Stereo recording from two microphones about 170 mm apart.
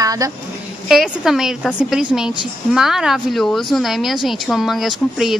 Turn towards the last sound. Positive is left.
turn(degrees=0)  # may be behind; listen again after turning